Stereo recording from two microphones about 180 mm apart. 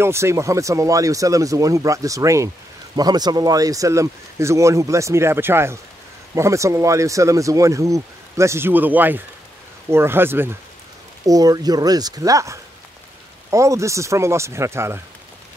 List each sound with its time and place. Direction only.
0.0 s speech: 15° right (ahead or behind)